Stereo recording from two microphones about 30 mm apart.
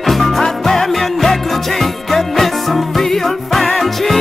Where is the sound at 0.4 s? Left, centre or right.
Centre.